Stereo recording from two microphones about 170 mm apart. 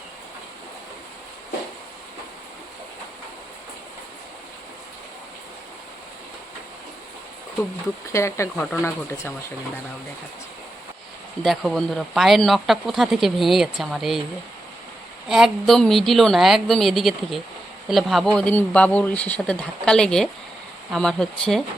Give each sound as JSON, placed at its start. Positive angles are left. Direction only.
{"t": 8.1, "sound": "speech", "side_deg": 15}
{"t": 11.4, "sound": "speech", "side_deg": 0}
{"t": 15.3, "sound": "speech", "side_deg": 0}